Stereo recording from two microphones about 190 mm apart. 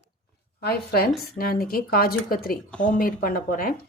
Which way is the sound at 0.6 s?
55° left (ahead or behind).